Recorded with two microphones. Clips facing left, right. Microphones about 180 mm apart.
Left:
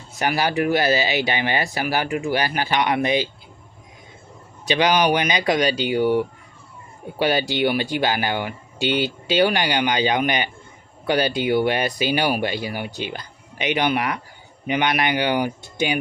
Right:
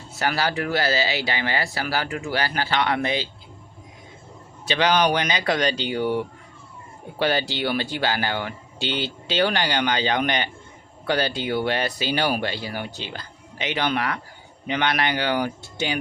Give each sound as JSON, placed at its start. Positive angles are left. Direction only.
{"t": 0.2, "sound": "speech", "side_deg": 15}
{"t": 4.6, "sound": "speech", "side_deg": 15}